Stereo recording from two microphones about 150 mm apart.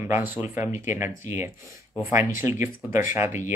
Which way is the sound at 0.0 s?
15° right (ahead or behind).